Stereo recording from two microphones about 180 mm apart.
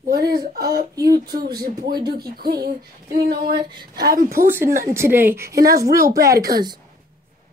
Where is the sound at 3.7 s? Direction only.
25° right (ahead or behind).